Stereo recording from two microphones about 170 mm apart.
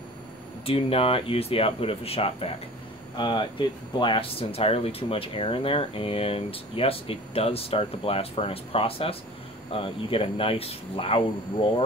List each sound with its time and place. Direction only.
0.7 s speech: 35° left (ahead or behind)